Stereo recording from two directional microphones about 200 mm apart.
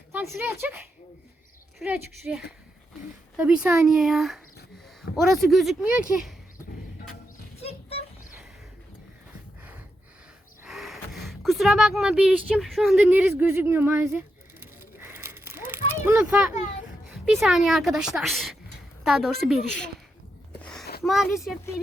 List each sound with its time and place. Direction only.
0.1 s speech: 10° right (ahead or behind)
1.8 s a woman's voice: 10° right (ahead or behind)
7.6 s a sound: 30° left (ahead or behind)
10.6 s gasp: centre (ahead or behind)
16.0 s a woman's voice: 10° right (ahead or behind)
20.6 s a sound: 5° left (ahead or behind)
21.0 s speech: centre (ahead or behind)